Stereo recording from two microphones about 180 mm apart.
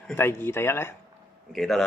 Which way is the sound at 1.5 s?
Centre (ahead or behind).